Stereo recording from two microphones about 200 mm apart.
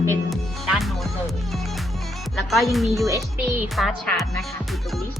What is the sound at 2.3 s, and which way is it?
Speech, centre (ahead or behind).